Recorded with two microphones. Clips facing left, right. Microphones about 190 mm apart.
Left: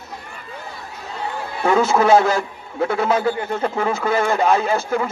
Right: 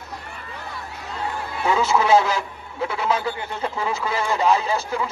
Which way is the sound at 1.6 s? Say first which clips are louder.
Left 4 dB; 50° left (ahead or behind).